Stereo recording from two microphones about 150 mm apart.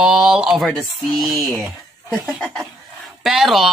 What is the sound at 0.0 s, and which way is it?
Speech, 5° right (ahead or behind).